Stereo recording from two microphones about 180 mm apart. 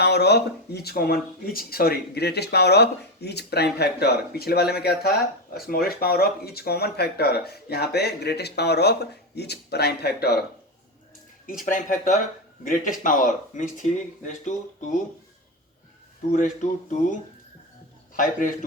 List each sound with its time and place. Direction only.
0.0 s speech: 65° left (ahead or behind)
11.6 s speech: 45° left (ahead or behind)
16.3 s speech: 45° left (ahead or behind)
18.2 s speech: 50° left (ahead or behind)